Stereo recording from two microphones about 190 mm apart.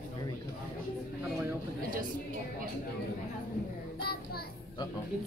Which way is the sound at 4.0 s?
55° left (ahead or behind).